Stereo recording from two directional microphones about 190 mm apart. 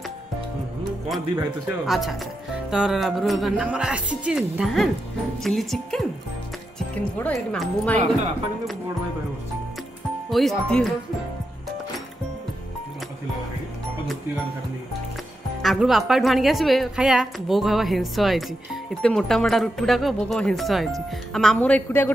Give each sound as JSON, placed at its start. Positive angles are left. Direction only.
{"t": 1.3, "sound": "speech", "side_deg": -20}
{"t": 1.9, "sound": "a woman's voice", "side_deg": 0}
{"t": 7.2, "sound": "a man's voice", "side_deg": 5}
{"t": 10.3, "sound": "a woman's voice", "side_deg": 0}
{"t": 15.6, "sound": "a woman's voice", "side_deg": 0}